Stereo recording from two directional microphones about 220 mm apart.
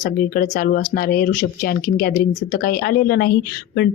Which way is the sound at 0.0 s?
40° left (ahead or behind).